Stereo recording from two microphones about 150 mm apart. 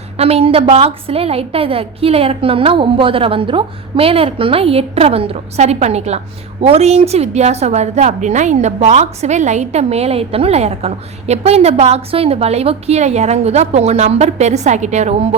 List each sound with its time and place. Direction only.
0.2 s a woman's voice: 40° right (ahead or behind)